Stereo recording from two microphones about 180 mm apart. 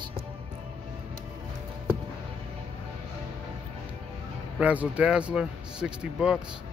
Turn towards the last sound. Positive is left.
turn(degrees=-5)  # may be behind; listen again after turning